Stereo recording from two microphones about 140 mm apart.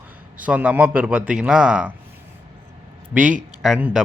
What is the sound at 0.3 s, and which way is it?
Speech, 10° right (ahead or behind).